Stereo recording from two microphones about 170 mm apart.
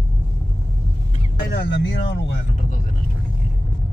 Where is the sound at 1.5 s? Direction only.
90° left.